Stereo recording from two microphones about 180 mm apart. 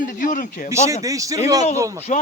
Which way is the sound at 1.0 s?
20° right (ahead or behind).